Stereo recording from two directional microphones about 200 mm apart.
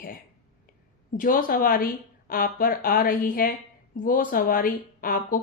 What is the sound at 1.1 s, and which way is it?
Speech, 45° left (ahead or behind).